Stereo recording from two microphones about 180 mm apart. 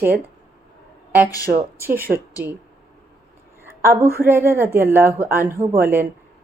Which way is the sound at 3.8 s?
15° right (ahead or behind).